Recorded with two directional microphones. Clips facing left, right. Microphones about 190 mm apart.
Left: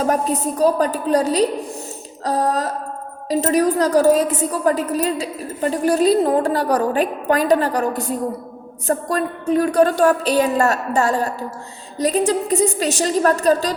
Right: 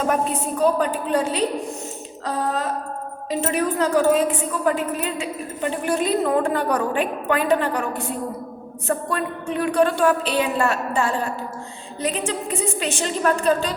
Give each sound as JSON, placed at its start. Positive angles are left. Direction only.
{"t": 0.0, "sound": "a woman's voice", "side_deg": 40}
{"t": 2.2, "sound": "a sound", "side_deg": 40}
{"t": 3.2, "sound": "a woman's voice", "side_deg": 40}